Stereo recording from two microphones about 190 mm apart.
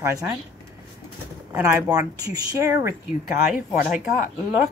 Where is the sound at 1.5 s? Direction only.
15° right (ahead or behind).